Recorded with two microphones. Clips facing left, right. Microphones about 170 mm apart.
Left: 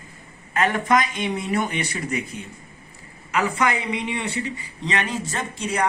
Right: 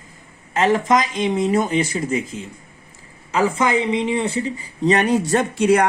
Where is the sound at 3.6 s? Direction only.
30° right (ahead or behind).